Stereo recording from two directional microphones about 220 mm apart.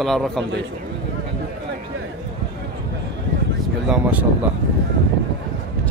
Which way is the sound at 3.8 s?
5° right (ahead or behind).